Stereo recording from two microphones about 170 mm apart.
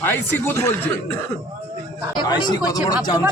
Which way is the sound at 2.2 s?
25° left (ahead or behind).